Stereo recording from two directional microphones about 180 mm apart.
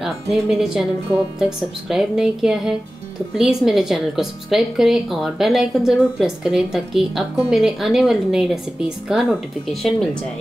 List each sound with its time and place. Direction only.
0.0 s a woman's voice: centre (ahead or behind)